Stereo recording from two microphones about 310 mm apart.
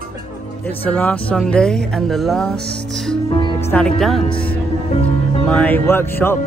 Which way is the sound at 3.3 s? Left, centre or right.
Centre.